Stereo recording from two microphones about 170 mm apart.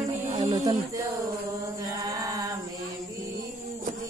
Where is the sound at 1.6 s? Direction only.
20° right (ahead or behind).